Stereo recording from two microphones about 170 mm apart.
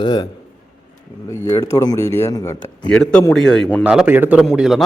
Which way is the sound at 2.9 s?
5° left (ahead or behind).